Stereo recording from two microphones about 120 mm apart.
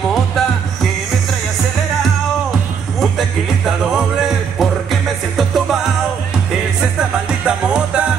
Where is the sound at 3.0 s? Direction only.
Centre (ahead or behind).